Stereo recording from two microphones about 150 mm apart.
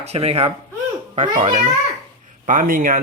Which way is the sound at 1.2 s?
55° right (ahead or behind).